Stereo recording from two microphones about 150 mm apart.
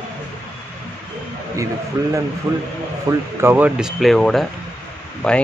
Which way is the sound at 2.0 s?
25° right (ahead or behind).